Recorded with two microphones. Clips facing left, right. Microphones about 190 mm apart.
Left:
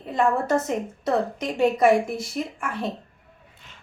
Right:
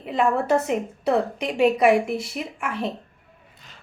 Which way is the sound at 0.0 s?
5° right (ahead or behind).